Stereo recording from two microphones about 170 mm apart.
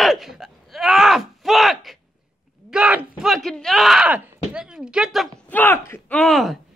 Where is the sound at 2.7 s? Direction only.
5° right (ahead or behind).